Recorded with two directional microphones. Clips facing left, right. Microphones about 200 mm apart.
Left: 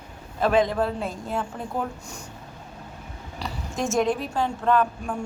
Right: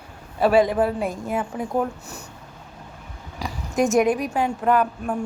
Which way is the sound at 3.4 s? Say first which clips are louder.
Right 7 dB; 15° right (ahead or behind).